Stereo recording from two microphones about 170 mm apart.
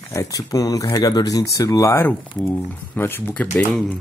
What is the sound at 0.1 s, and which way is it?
Speech, 20° left (ahead or behind).